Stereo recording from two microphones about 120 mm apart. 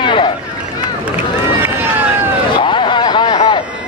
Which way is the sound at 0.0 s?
45° left (ahead or behind).